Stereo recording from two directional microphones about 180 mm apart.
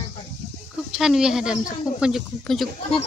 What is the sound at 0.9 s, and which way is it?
Speech, 5° right (ahead or behind).